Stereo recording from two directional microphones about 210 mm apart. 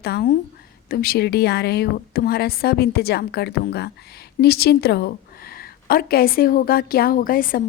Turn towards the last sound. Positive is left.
turn(degrees=40)  # may be behind; listen again after turning